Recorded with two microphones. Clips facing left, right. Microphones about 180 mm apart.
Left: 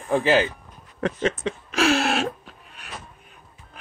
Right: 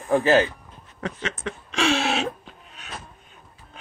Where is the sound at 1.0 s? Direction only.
55° left (ahead or behind).